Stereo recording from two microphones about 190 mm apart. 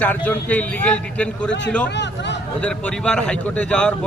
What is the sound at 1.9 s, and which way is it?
Speech, 65° left (ahead or behind).